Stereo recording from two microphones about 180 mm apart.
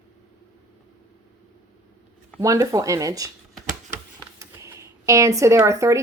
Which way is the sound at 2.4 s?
20° right (ahead or behind).